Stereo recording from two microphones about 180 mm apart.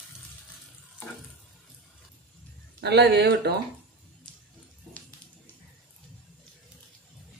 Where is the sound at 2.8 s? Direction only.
65° right (ahead or behind).